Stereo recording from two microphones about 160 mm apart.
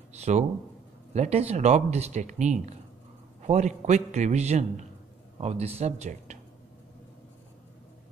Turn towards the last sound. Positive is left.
turn(degrees=-45)  # may be behind; listen again after turning